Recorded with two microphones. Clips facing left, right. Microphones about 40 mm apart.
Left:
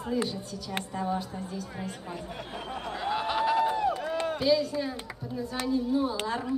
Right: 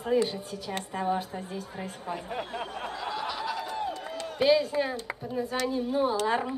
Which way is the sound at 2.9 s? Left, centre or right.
Left.